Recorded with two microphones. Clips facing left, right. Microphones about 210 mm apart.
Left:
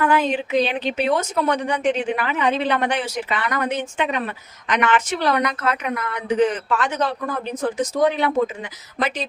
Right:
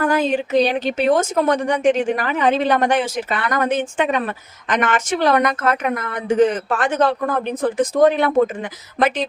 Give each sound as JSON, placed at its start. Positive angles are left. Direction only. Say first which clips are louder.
{"t": 0.0, "sound": "a woman's voice", "louder": "right 2 dB", "side_deg": -40}